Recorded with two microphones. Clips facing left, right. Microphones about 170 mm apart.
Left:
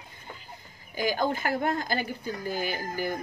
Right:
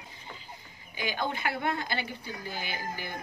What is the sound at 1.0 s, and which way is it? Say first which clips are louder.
Speech: left 5 dB; 40° left (ahead or behind).